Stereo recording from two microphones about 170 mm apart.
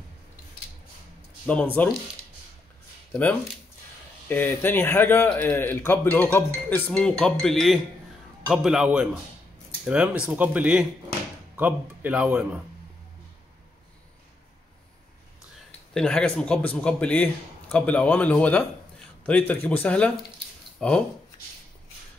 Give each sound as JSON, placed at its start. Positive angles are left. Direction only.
{"t": 1.4, "sound": "speech", "side_deg": 5}
{"t": 3.1, "sound": "a man's voice", "side_deg": 10}
{"t": 15.9, "sound": "a man's voice", "side_deg": 5}